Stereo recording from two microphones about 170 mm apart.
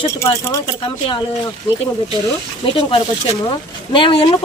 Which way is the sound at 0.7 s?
30° left (ahead or behind).